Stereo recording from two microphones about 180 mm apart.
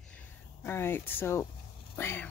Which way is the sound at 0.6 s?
15° left (ahead or behind).